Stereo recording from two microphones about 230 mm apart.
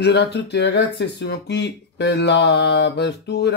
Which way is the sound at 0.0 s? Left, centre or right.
Left.